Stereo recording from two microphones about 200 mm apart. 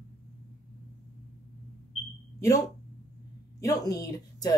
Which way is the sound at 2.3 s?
15° left (ahead or behind).